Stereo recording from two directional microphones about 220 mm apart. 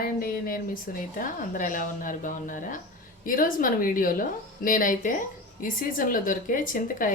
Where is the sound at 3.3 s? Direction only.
40° left (ahead or behind).